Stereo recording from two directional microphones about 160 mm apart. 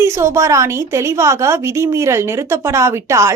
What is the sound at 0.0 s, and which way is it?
A woman's voice, 15° right (ahead or behind).